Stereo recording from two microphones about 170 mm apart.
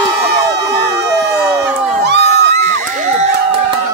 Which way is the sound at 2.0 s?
80° right.